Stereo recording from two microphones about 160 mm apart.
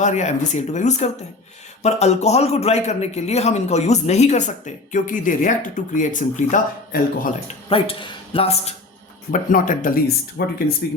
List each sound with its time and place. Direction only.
0.0 s a man's voice: 50° left (ahead or behind)
7.7 s a man's voice: 35° left (ahead or behind)
9.3 s speech: 55° left (ahead or behind)